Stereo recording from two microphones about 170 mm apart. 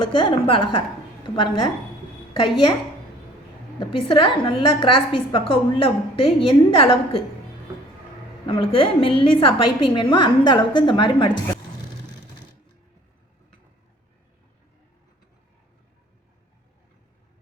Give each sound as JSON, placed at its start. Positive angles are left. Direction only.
{"t": 0.0, "sound": "a woman's voice", "side_deg": 30}
{"t": 3.8, "sound": "a woman's voice", "side_deg": 30}
{"t": 8.4, "sound": "a woman's voice", "side_deg": 35}